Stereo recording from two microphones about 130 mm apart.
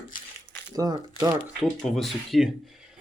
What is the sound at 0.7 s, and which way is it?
Speech, 30° right (ahead or behind).